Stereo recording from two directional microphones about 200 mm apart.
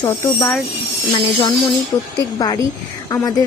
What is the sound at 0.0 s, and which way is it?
A woman's voice, 15° left (ahead or behind).